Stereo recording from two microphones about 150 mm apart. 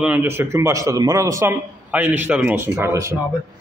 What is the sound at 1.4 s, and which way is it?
A man's voice, 10° right (ahead or behind).